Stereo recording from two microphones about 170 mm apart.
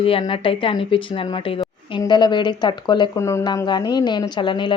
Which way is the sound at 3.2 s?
15° left (ahead or behind).